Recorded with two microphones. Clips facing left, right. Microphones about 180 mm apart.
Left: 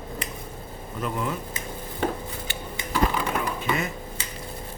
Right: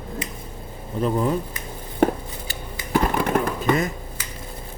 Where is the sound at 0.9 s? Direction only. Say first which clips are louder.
Right 8 dB; 35° right (ahead or behind).